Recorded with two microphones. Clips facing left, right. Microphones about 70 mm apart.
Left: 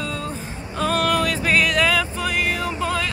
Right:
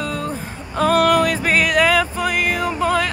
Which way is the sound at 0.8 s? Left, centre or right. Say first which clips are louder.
Right 6 dB; centre.